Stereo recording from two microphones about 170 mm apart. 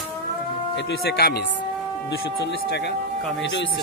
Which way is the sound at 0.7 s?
90° left.